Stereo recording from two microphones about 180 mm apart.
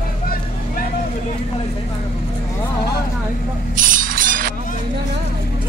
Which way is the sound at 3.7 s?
50° right (ahead or behind).